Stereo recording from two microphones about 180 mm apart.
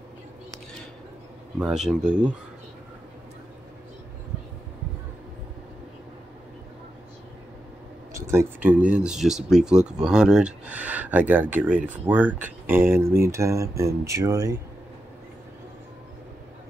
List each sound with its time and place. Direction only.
1.6 s speech: centre (ahead or behind)
8.1 s speech: 15° right (ahead or behind)